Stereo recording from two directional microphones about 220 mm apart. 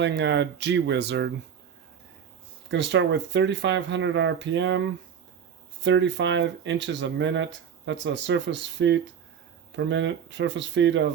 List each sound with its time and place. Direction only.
0.0 s speech: 50° right (ahead or behind)
2.6 s speech: 55° right (ahead or behind)
5.8 s speech: 55° right (ahead or behind)